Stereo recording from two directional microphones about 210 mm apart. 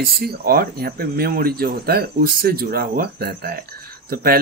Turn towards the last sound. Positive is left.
turn(degrees=-45)  # may be behind; listen again after turning